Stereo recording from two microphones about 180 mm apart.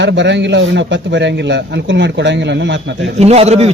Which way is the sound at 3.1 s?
35° right (ahead or behind).